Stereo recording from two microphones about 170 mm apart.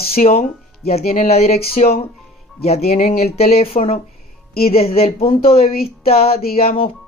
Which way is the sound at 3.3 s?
35° left (ahead or behind).